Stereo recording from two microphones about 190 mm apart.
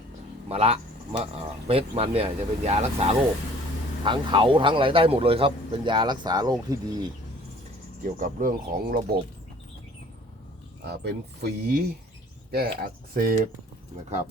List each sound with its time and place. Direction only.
0.4 s a man's voice: 30° right (ahead or behind)
8.2 s speech: 45° right (ahead or behind)
11.0 s speech: 55° right (ahead or behind)